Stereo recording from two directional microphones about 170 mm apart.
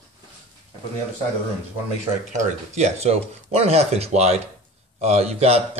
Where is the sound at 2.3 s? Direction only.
45° right (ahead or behind).